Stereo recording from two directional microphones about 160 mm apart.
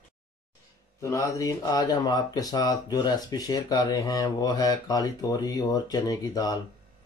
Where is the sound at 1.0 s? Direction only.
20° left (ahead or behind).